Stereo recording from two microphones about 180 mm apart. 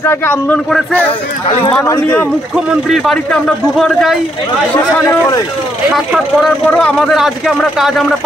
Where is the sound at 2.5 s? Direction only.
Centre (ahead or behind).